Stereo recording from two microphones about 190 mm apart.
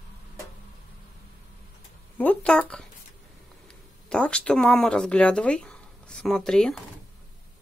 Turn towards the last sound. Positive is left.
turn(degrees=5)  # may be behind; listen again after turning